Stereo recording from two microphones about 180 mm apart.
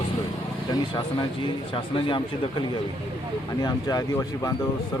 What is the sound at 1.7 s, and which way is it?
Speech, 25° left (ahead or behind).